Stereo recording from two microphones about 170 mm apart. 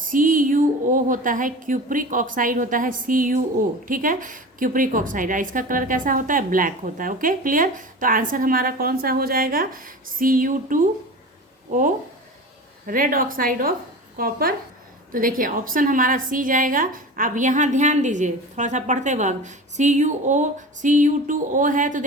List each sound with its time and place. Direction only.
0.0 s a woman's voice: 55° right (ahead or behind)